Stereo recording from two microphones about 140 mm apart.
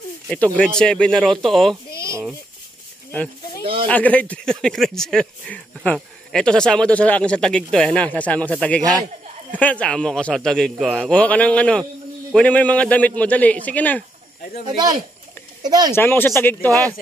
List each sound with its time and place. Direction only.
0.3 s speech: 10° left (ahead or behind)
2.0 s a sound: 20° right (ahead or behind)
3.9 s speech: 10° left (ahead or behind)
15.6 s speech: 30° right (ahead or behind)
15.9 s speech: 15° left (ahead or behind)